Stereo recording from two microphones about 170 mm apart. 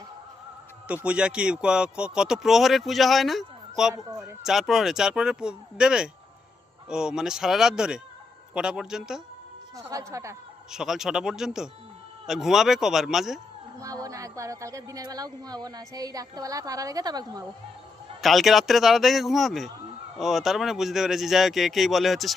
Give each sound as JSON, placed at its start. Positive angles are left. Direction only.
{"t": 0.9, "sound": "speech", "side_deg": -5}
{"t": 3.9, "sound": "speech", "side_deg": -20}
{"t": 4.4, "sound": "speech", "side_deg": 0}
{"t": 9.7, "sound": "speech", "side_deg": -20}
{"t": 10.7, "sound": "speech", "side_deg": -5}
{"t": 13.7, "sound": "speech", "side_deg": -20}
{"t": 18.2, "sound": "speech", "side_deg": 0}